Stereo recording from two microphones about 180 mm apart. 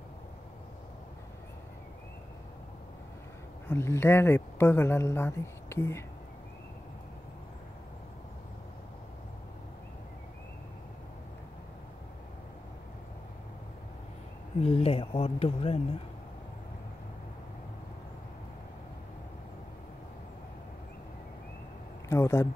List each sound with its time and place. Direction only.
3.6 s speech: 15° left (ahead or behind)
14.6 s speech: 35° left (ahead or behind)
22.1 s speech: 15° left (ahead or behind)